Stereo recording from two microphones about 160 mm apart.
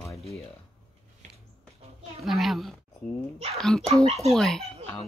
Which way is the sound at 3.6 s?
Centre (ahead or behind).